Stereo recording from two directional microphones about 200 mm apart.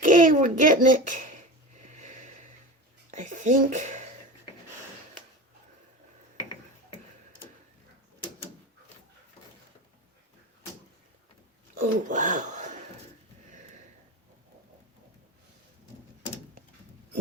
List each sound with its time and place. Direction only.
0.0 s a child's voice: 40° right (ahead or behind)
1.8 s wheeze: 35° right (ahead or behind)
3.1 s speech: 40° right (ahead or behind)
11.8 s speech: 40° right (ahead or behind)
13.5 s sniff: 40° right (ahead or behind)